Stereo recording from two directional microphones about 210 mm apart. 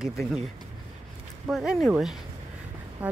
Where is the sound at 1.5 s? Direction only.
Centre (ahead or behind).